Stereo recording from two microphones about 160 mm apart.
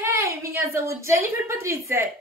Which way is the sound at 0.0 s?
15° right (ahead or behind).